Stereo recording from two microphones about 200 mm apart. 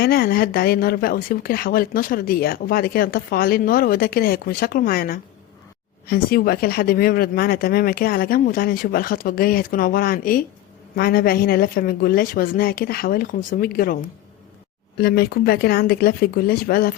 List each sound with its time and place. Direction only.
0.0 s speech: 50° left (ahead or behind)
15.0 s speech: 50° left (ahead or behind)